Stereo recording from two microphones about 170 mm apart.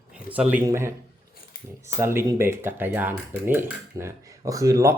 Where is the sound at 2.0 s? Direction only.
15° right (ahead or behind).